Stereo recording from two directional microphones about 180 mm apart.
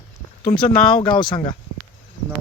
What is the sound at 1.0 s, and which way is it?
Speech, 25° left (ahead or behind).